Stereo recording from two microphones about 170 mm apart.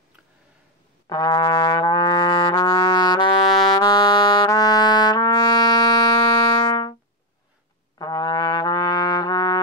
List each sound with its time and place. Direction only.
1.0 s trumpet: 25° left (ahead or behind)
8.0 s trumpet: 25° left (ahead or behind)